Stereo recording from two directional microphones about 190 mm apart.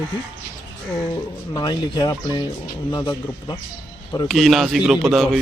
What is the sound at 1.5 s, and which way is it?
Speech, 20° left (ahead or behind).